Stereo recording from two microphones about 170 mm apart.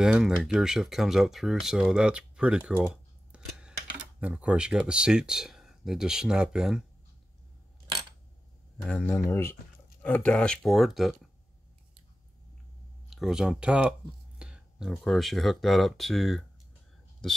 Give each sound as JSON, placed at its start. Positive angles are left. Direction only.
{"t": 0.0, "sound": "speech", "side_deg": -5}
{"t": 8.8, "sound": "speech", "side_deg": 5}
{"t": 13.1, "sound": "speech", "side_deg": 0}